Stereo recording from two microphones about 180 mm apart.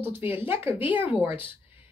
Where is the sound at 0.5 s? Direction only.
30° left (ahead or behind).